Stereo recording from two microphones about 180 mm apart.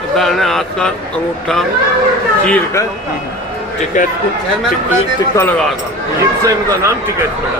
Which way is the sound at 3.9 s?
45° left (ahead or behind).